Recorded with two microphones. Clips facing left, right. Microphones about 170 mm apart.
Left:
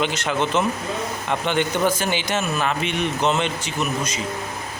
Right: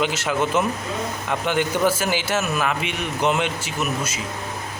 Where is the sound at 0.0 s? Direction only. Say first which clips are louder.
Even; 5° right (ahead or behind).